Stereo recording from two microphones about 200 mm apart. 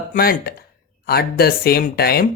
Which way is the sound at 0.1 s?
45° left (ahead or behind).